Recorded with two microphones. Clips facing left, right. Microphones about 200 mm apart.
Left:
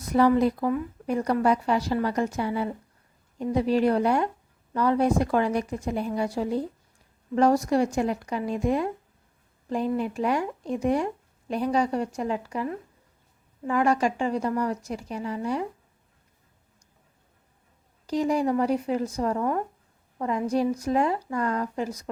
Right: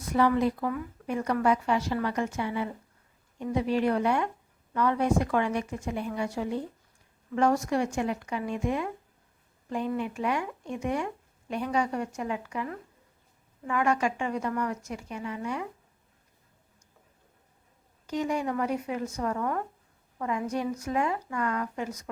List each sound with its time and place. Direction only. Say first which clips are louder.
0.1 s speech: left 4 dB; 40° left (ahead or behind)
13.7 s speech: left 4 dB; 35° left (ahead or behind)
18.0 s speech: left 5 dB; 35° left (ahead or behind)